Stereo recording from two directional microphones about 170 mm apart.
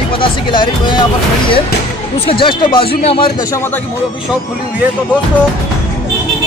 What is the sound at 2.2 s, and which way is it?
Speech, 30° left (ahead or behind).